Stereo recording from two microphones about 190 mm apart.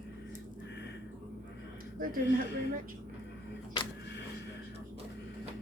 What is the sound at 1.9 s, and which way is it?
Speech, 50° right (ahead or behind).